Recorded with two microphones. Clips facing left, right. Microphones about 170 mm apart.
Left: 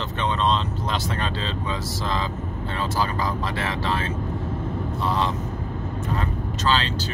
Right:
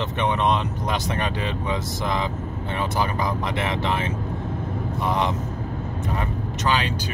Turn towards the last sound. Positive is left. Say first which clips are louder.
# even
turn(degrees=-15)  # may be behind; listen again after turning